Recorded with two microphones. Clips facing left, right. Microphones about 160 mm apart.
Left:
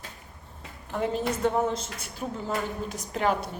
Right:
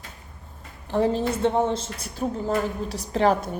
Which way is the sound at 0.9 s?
35° right (ahead or behind).